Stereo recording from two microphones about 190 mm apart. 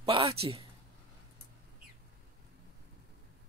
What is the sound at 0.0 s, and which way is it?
Speech, 30° right (ahead or behind).